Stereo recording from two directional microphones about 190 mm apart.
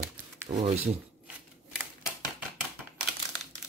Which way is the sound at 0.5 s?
30° right (ahead or behind).